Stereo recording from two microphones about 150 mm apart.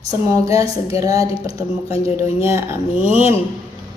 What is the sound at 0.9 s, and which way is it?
Female singing, 25° right (ahead or behind).